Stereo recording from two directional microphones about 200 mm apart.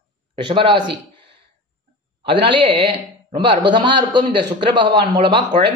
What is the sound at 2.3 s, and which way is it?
Speech, 25° right (ahead or behind).